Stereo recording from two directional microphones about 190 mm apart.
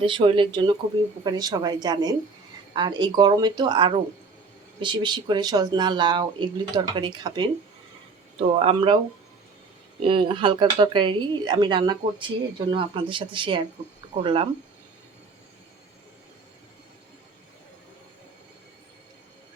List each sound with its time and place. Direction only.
0.0 s speech: 25° right (ahead or behind)
8.5 s speech: 30° right (ahead or behind)
10.0 s speech: 30° right (ahead or behind)